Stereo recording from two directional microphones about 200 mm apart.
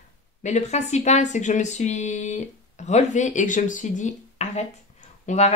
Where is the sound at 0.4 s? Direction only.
35° left (ahead or behind).